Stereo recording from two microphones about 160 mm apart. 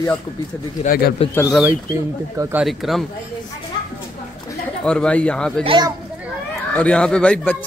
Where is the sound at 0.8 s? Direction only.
70° left (ahead or behind).